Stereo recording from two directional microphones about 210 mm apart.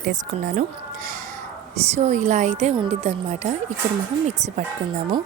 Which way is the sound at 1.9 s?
35° right (ahead or behind).